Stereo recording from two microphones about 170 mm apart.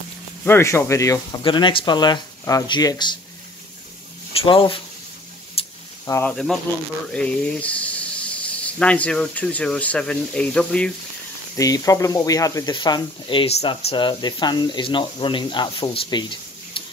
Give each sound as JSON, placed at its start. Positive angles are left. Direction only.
{"t": 0.5, "sound": "speech", "side_deg": 15}
{"t": 4.3, "sound": "speech", "side_deg": 35}
{"t": 5.6, "sound": "a sound", "side_deg": 35}
{"t": 6.0, "sound": "speech", "side_deg": 15}
{"t": 6.3, "sound": "speech", "side_deg": 0}
{"t": 11.5, "sound": "speech", "side_deg": 20}